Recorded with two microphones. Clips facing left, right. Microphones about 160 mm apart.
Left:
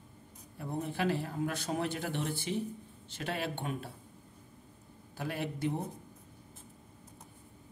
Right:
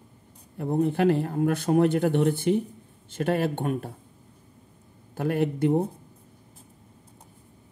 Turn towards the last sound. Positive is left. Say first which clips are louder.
# right 12 dB
turn(degrees=-55)  # may be behind; listen again after turning